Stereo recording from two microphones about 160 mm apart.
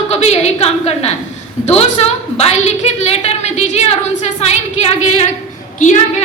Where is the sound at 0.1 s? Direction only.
40° left (ahead or behind).